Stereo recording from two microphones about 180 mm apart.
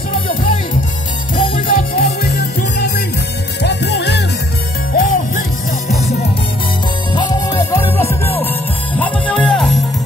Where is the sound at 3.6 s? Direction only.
70° left (ahead or behind).